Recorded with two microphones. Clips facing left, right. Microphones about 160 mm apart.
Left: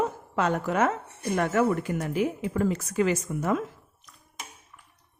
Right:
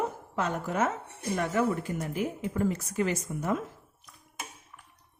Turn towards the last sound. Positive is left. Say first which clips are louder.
# left 4 dB
turn(degrees=90)